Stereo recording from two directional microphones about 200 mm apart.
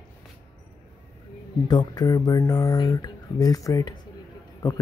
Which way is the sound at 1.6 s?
20° left (ahead or behind).